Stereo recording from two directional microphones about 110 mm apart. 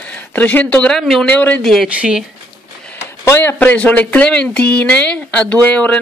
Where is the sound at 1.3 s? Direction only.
15° left (ahead or behind).